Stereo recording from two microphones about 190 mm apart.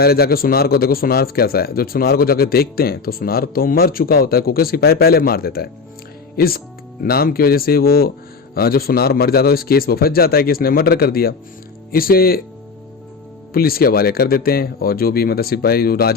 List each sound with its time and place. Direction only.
0.0 s a man's voice: 55° left (ahead or behind)
13.5 s a man's voice: 50° left (ahead or behind)